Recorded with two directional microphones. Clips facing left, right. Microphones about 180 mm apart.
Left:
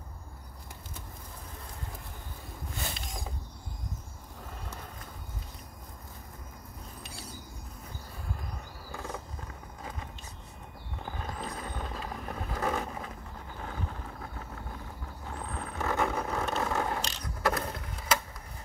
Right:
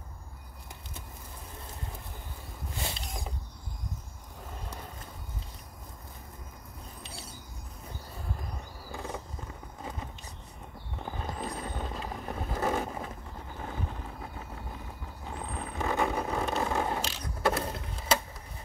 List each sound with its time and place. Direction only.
8.9 s wild animals: 15° right (ahead or behind)
11.1 s vehicle: 25° right (ahead or behind)
15.2 s vehicle: 15° right (ahead or behind)
17.5 s a sound: 25° right (ahead or behind)